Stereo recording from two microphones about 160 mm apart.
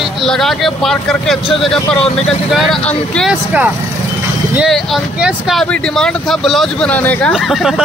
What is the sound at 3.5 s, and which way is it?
Speech, 10° right (ahead or behind).